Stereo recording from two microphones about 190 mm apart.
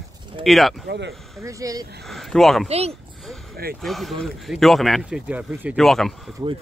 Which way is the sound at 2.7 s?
30° right (ahead or behind).